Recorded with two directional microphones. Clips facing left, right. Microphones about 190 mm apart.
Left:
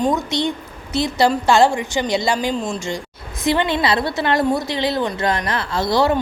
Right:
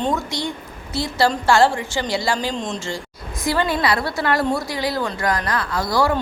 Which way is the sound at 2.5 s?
5° left (ahead or behind).